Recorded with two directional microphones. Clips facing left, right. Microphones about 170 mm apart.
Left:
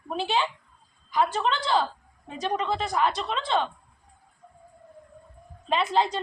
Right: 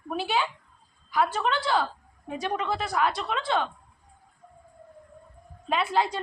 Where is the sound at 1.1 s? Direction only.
20° left (ahead or behind).